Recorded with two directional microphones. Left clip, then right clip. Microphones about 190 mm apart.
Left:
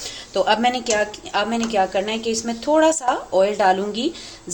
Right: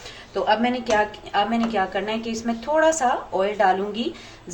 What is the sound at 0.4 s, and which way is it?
Speech, 45° left (ahead or behind).